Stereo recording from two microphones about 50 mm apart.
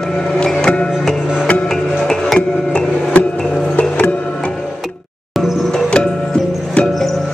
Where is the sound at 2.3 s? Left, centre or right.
Left.